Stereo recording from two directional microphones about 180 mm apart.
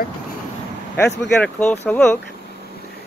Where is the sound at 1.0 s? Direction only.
10° left (ahead or behind).